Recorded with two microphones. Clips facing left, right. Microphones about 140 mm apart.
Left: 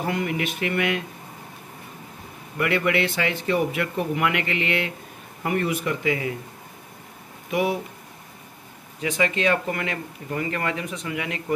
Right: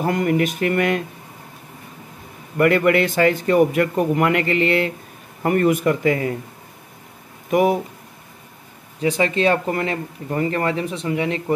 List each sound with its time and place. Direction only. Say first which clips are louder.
0.0 s speech: right 7 dB; 45° right (ahead or behind)
2.5 s speech: right 7 dB; 50° right (ahead or behind)
7.5 s speech: right 7 dB; 45° right (ahead or behind)
9.0 s speech: right 5 dB; 35° right (ahead or behind)